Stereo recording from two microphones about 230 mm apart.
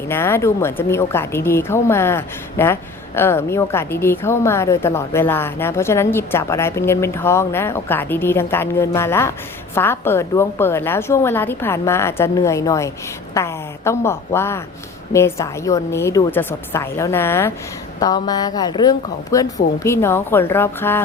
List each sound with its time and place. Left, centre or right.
0.1 s a woman's voice: centre